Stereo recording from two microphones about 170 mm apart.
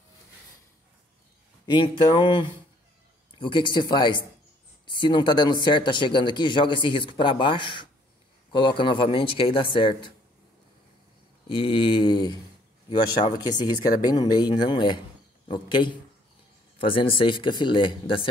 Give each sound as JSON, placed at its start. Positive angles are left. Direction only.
{"t": 1.7, "sound": "speech", "side_deg": 25}
{"t": 3.3, "sound": "speech", "side_deg": 30}
{"t": 11.4, "sound": "a sound", "side_deg": 30}
{"t": 13.2, "sound": "speech", "side_deg": 25}